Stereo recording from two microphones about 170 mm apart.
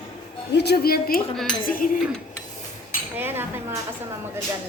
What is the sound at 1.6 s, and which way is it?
Speech, 55° left (ahead or behind).